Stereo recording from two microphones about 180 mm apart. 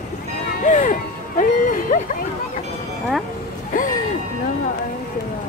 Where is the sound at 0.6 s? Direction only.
45° left (ahead or behind).